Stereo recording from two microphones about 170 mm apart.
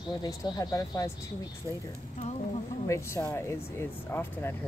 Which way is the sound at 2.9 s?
15° left (ahead or behind).